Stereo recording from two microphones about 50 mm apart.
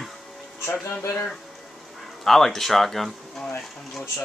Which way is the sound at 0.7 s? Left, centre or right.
Left.